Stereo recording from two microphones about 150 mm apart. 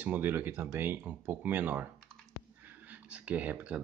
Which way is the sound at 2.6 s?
10° right (ahead or behind).